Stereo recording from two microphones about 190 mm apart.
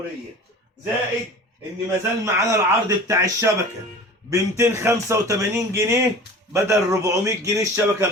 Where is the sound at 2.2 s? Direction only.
15° right (ahead or behind).